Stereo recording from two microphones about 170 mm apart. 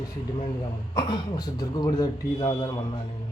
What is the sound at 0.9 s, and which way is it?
A man's voice, 25° left (ahead or behind).